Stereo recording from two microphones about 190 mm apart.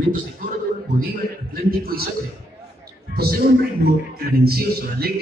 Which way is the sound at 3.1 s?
55° right (ahead or behind).